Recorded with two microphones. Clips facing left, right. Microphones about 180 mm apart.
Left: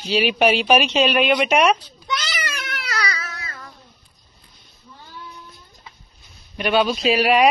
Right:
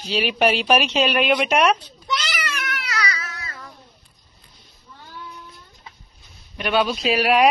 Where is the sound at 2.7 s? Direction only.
35° left (ahead or behind).